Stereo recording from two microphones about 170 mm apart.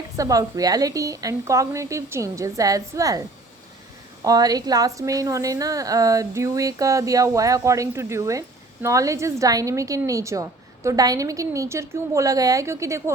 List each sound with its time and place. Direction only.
0.2 s a woman's voice: 20° right (ahead or behind)